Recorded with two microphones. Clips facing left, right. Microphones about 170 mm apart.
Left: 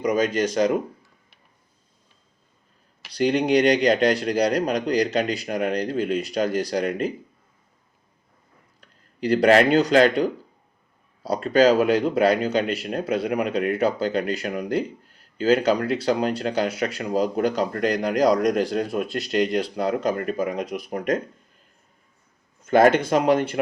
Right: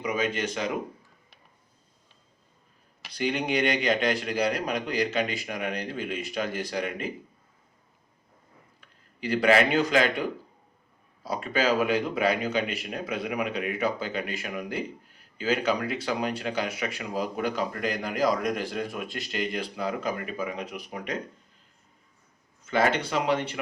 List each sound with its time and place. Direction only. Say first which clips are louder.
0.0 s speech: left 7 dB; 40° left (ahead or behind)
3.1 s speech: left 8 dB; 40° left (ahead or behind)
8.8 s speech: left 8 dB; 40° left (ahead or behind)
11.4 s speech: left 8 dB; 40° left (ahead or behind)
22.6 s speech: left 8 dB; 50° left (ahead or behind)